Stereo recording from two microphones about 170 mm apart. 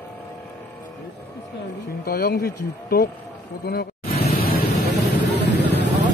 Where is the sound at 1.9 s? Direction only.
60° left (ahead or behind).